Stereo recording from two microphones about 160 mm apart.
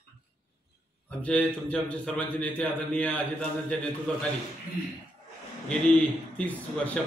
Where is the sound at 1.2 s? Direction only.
5° left (ahead or behind).